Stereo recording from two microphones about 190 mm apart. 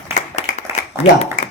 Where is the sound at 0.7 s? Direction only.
15° right (ahead or behind).